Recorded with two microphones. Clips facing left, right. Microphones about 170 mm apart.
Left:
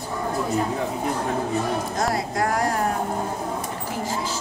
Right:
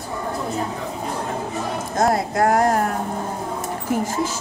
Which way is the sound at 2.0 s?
50° right (ahead or behind).